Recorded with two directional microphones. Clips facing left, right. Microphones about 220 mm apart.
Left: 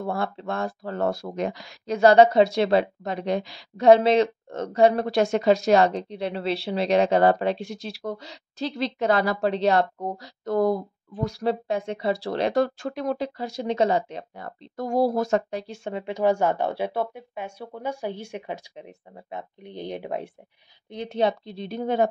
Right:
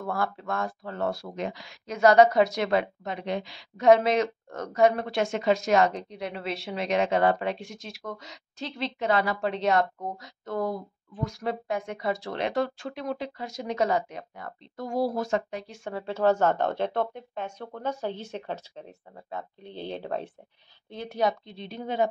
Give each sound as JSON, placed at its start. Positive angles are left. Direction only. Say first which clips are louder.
{"t": 0.0, "sound": "a woman's voice", "louder": "left 2 dB", "side_deg": 25}
{"t": 21.5, "sound": "speech", "louder": "left 6 dB", "side_deg": 45}